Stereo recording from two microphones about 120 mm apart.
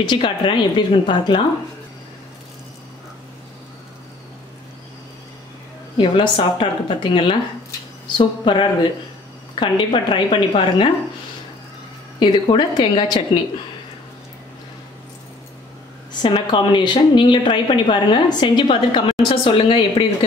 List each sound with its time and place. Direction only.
0.0 s a woman's voice: 40° left (ahead or behind)
5.9 s a woman's voice: 40° left (ahead or behind)
12.2 s a woman's voice: 40° left (ahead or behind)
16.1 s a woman's voice: 40° left (ahead or behind)